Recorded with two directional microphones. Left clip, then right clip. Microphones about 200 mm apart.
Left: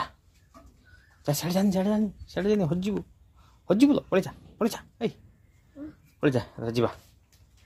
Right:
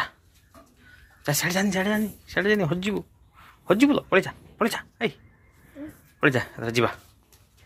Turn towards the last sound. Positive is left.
turn(degrees=10)  # may be behind; listen again after turning